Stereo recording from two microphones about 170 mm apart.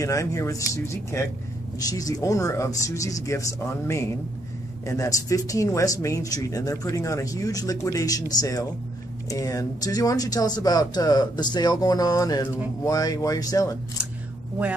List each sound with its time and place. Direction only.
0.0 s speech: 20° left (ahead or behind)